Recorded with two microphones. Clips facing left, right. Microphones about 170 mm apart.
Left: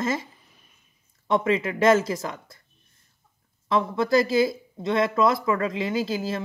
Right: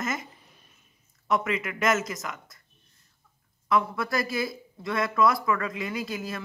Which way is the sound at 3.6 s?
25° left (ahead or behind).